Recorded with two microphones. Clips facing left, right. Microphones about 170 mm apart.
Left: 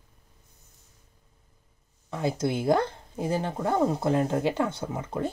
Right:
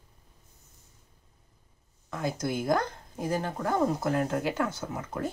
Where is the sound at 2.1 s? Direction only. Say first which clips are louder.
Left 3 dB; 30° left (ahead or behind).